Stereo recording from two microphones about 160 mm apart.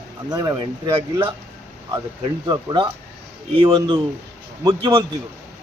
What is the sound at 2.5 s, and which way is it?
A man's voice, 25° right (ahead or behind).